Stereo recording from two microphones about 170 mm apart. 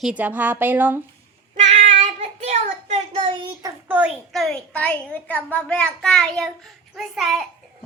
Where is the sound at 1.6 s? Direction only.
45° right (ahead or behind); by 3.7 s 30° right (ahead or behind).